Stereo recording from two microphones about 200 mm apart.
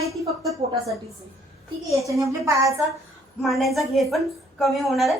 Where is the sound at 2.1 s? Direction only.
15° right (ahead or behind).